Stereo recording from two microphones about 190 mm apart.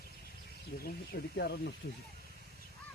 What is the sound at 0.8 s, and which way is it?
Speech, 55° left (ahead or behind).